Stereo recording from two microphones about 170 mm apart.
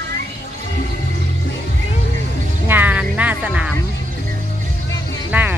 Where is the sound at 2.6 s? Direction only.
10° right (ahead or behind).